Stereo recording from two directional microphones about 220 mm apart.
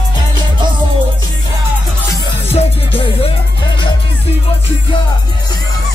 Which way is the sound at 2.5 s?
25° left (ahead or behind).